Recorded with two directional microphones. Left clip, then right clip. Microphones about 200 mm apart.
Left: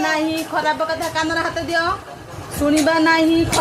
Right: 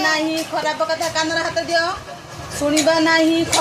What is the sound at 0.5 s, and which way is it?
A woman's voice, 30° left (ahead or behind).